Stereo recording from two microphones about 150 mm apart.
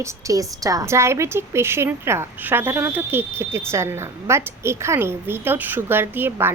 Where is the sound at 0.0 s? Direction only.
20° right (ahead or behind).